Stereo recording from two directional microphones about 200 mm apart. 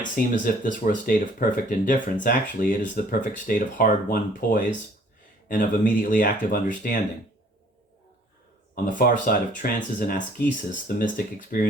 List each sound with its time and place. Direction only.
0.0 s speech: 40° left (ahead or behind)
8.7 s speech: 45° left (ahead or behind)